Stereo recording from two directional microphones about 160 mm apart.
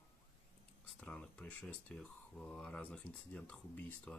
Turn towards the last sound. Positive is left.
turn(degrees=10)  # may be behind; listen again after turning